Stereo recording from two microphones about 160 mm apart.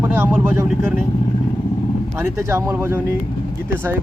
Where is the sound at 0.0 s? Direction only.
15° right (ahead or behind).